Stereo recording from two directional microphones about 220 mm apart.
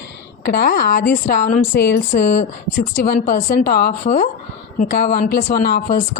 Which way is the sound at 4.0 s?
30° left (ahead or behind).